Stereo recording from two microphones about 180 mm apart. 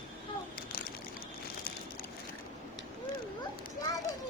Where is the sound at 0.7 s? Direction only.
50° left (ahead or behind).